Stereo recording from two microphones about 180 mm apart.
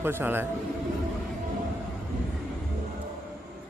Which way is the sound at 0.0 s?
10° right (ahead or behind).